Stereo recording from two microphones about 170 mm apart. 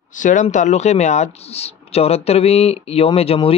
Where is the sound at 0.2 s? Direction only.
50° left (ahead or behind).